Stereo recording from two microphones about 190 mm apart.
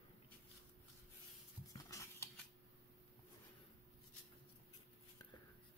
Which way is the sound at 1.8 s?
15° left (ahead or behind).